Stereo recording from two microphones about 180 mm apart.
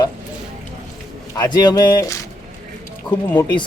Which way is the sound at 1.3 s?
20° left (ahead or behind).